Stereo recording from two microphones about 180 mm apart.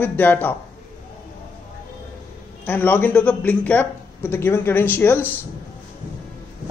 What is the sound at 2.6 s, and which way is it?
A man's voice, 10° left (ahead or behind).